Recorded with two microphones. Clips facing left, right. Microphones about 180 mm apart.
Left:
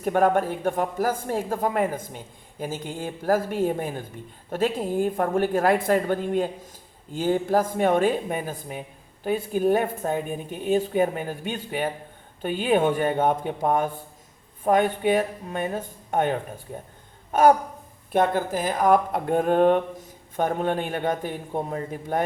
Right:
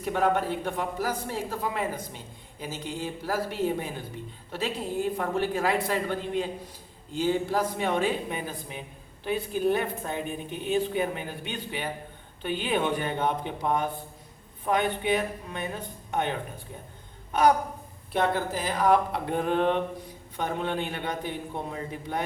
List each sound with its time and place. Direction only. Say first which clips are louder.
0.0 s speech: left 5 dB; 50° left (ahead or behind)